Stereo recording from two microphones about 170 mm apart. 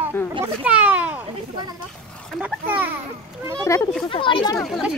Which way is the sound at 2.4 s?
10° right (ahead or behind).